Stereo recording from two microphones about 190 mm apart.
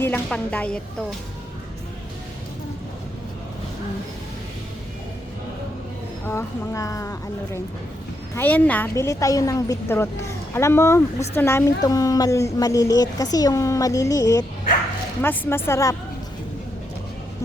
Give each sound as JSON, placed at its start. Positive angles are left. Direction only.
{"t": 0.0, "sound": "a woman's voice", "side_deg": 5}
{"t": 6.2, "sound": "a woman's voice", "side_deg": 15}